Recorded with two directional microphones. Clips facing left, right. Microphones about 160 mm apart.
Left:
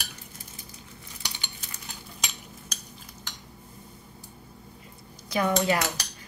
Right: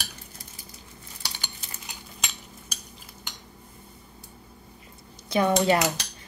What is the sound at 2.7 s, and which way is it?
Cutlery, 5° right (ahead or behind).